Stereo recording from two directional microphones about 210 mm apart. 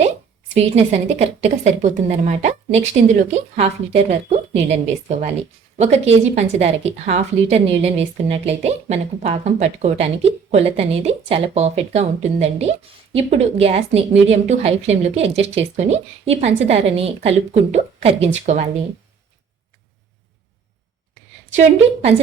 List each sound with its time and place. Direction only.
0.4 s a woman's voice: 30° right (ahead or behind)